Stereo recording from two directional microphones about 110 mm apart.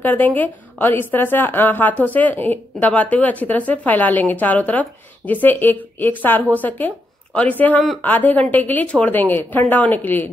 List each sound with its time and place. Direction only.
0.0 s a woman's voice: 15° left (ahead or behind)